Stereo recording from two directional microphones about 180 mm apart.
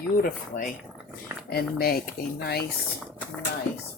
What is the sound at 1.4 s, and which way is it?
Speech, 55° left (ahead or behind).